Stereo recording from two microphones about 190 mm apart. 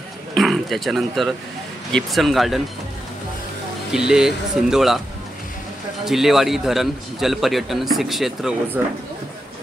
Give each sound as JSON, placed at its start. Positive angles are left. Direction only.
{"t": 0.3, "sound": "a man's voice", "side_deg": 0}
{"t": 3.9, "sound": "a man's voice", "side_deg": -5}
{"t": 6.0, "sound": "a man's voice", "side_deg": 0}